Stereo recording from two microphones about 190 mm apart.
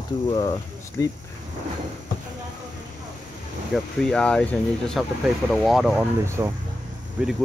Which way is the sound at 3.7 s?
5° left (ahead or behind).